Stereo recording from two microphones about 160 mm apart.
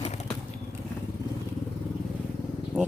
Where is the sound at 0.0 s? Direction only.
45° left (ahead or behind).